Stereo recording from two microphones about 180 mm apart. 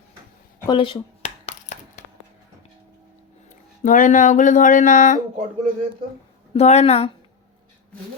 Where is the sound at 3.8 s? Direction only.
45° left (ahead or behind).